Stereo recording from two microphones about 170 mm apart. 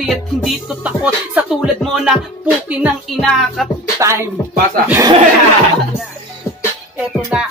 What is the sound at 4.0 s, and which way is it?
Speech, 15° right (ahead or behind).